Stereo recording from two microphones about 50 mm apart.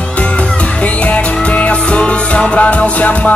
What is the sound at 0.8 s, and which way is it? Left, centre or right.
Music, left.